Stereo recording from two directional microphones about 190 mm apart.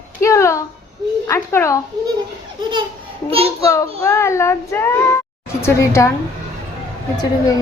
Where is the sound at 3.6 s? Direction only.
15° left (ahead or behind).